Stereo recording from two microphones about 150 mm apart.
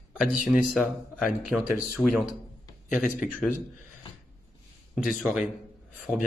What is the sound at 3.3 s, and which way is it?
Speech, 10° left (ahead or behind).